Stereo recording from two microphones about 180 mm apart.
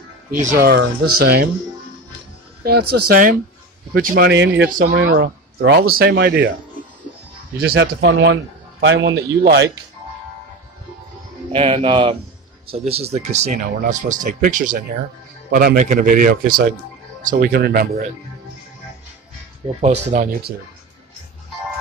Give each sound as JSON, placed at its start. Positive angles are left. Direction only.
{"t": 0.4, "sound": "speech", "side_deg": -50}
{"t": 2.6, "sound": "speech", "side_deg": -60}
{"t": 4.6, "sound": "speech", "side_deg": -50}
{"t": 4.9, "sound": "speech", "side_deg": -90}
{"t": 7.5, "sound": "a man's voice", "side_deg": -60}
{"t": 9.4, "sound": "speech", "side_deg": -65}
{"t": 11.5, "sound": "speech", "side_deg": -30}
{"t": 19.8, "sound": "speech", "side_deg": -40}